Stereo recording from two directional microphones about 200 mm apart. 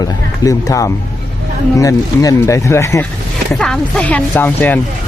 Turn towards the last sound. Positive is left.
turn(degrees=10)  # may be behind; listen again after turning